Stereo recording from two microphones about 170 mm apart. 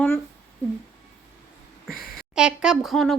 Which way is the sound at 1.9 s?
60° left (ahead or behind).